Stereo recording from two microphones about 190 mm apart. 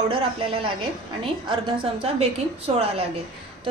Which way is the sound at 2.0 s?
35° right (ahead or behind).